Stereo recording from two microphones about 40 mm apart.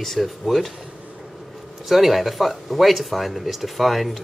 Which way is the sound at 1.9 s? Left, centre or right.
Centre.